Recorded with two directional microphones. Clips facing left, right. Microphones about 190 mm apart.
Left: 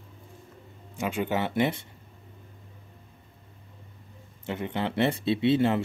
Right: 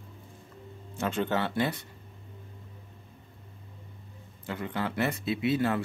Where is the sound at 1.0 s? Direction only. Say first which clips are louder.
Left 1 dB; 10° left (ahead or behind).